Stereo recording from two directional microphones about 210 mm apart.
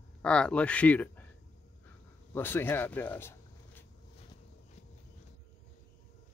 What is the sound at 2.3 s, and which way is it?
Speech, 10° left (ahead or behind).